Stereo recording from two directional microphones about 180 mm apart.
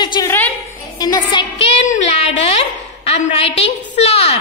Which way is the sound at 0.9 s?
20° left (ahead or behind).